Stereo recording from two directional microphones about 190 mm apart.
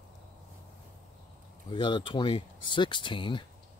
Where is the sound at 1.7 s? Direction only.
25° left (ahead or behind).